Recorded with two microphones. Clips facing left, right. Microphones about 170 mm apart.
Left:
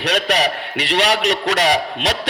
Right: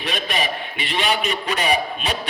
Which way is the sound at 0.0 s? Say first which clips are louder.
Left 6 dB; 85° left.